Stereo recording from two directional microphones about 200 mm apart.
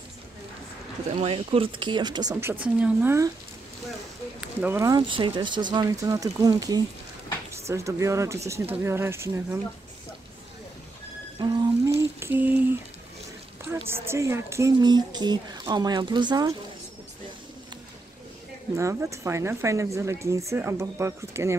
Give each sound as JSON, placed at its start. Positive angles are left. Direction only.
{"t": 1.1, "sound": "speech", "side_deg": -30}
{"t": 2.5, "sound": "speech", "side_deg": -10}
{"t": 4.4, "sound": "speech", "side_deg": -10}
{"t": 11.3, "sound": "a sound", "side_deg": -20}
{"t": 13.7, "sound": "speech", "side_deg": -10}
{"t": 18.8, "sound": "speech", "side_deg": -15}